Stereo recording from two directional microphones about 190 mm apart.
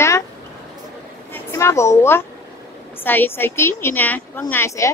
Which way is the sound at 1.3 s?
15° left (ahead or behind).